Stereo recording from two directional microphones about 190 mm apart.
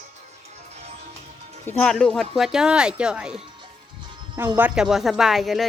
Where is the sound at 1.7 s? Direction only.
5° left (ahead or behind).